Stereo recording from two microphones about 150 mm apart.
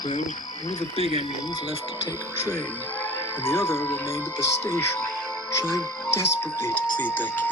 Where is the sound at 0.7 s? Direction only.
45° left (ahead or behind).